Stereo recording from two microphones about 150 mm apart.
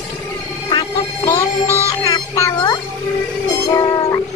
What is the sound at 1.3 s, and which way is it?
Speech, 15° left (ahead or behind).